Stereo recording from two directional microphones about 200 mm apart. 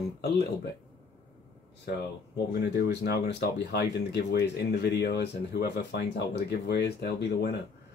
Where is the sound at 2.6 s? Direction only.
55° left (ahead or behind).